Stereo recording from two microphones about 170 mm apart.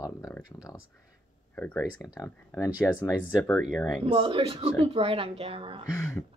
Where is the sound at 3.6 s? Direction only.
Centre (ahead or behind).